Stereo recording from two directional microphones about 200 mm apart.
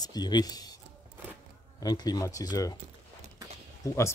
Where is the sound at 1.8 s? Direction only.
20° left (ahead or behind).